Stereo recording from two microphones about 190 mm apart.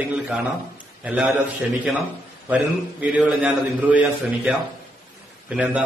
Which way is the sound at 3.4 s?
5° right (ahead or behind).